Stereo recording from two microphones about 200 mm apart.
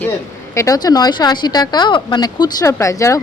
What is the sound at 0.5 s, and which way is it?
A woman's voice, 15° left (ahead or behind).